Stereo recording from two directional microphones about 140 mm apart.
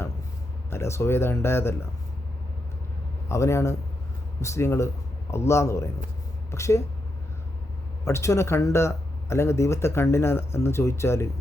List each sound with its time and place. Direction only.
0.7 s speech: 20° left (ahead or behind)
3.2 s speech: 20° left (ahead or behind)
8.0 s speech: 20° left (ahead or behind)